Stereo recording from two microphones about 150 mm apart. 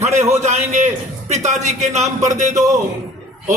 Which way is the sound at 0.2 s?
50° right (ahead or behind).